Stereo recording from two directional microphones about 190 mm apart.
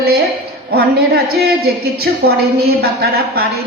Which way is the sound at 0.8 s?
55° right (ahead or behind).